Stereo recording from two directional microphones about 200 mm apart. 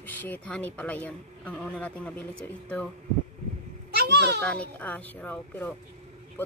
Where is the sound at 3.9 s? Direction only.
55° right (ahead or behind).